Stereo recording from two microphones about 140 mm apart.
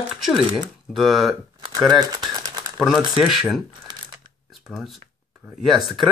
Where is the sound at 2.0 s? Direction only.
30° right (ahead or behind).